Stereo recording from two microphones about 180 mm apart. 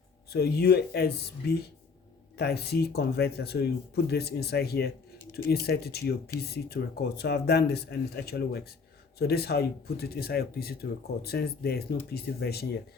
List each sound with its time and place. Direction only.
0.3 s speech: 60° left (ahead or behind)